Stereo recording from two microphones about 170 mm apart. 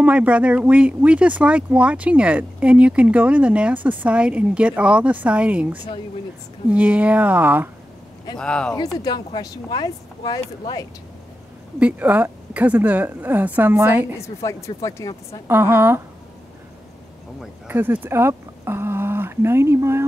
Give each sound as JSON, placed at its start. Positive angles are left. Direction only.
{"t": 0.0, "sound": "speech", "side_deg": -10}
{"t": 8.4, "sound": "speech", "side_deg": 5}
{"t": 8.7, "sound": "speech", "side_deg": 25}
{"t": 11.8, "sound": "speech", "side_deg": -10}
{"t": 14.1, "sound": "speech", "side_deg": 15}
{"t": 15.4, "sound": "speech", "side_deg": -15}
{"t": 17.4, "sound": "speech", "side_deg": -10}